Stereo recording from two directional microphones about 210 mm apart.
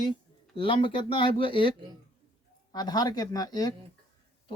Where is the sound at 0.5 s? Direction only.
25° left (ahead or behind).